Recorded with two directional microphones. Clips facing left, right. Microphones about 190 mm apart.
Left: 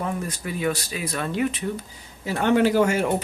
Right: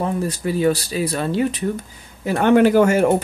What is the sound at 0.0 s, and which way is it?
Speech, 30° right (ahead or behind).